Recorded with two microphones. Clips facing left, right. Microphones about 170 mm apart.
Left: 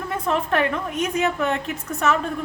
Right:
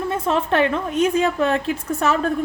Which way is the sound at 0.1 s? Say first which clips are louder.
Right 1 dB; 25° right (ahead or behind).